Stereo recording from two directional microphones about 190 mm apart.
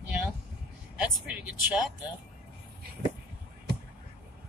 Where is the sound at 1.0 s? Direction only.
5° right (ahead or behind).